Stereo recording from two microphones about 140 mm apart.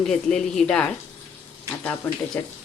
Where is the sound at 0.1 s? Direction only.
5° left (ahead or behind).